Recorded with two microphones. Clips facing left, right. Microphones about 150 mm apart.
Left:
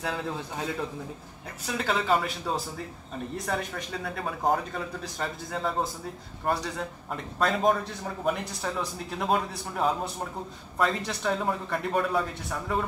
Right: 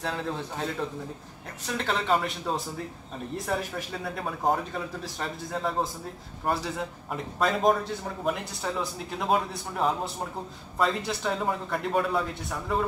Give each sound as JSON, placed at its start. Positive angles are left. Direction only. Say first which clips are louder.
{"t": 1.7, "sound": "speech", "louder": "even", "side_deg": 5}